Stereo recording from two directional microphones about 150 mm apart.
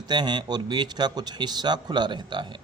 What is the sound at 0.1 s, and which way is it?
Speech, 30° right (ahead or behind).